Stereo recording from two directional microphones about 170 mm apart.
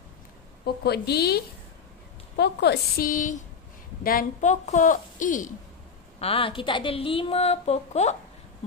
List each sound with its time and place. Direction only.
0.8 s a woman's voice: 70° left (ahead or behind); by 5.5 s 50° left (ahead or behind)
6.1 s a woman's voice: 35° left (ahead or behind)